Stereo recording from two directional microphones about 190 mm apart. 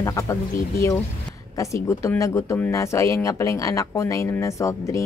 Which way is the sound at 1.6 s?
15° left (ahead or behind).